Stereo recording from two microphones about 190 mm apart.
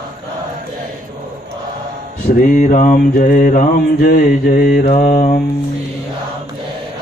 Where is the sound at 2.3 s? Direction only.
45° left (ahead or behind).